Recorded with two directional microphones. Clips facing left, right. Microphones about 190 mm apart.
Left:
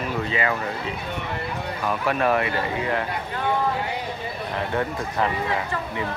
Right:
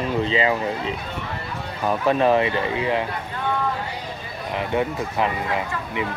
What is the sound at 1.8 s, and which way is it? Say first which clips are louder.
Speech: right 4 dB; 25° right (ahead or behind).